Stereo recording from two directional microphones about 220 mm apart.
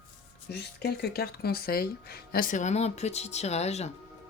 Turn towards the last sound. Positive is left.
turn(degrees=30)  # may be behind; listen again after turning